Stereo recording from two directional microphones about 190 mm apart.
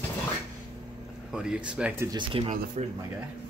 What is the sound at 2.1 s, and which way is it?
Speech, 30° right (ahead or behind).